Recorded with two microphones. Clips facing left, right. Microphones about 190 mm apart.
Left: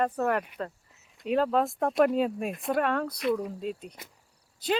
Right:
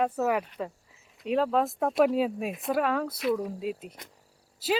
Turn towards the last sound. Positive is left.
turn(degrees=-5)  # may be behind; listen again after turning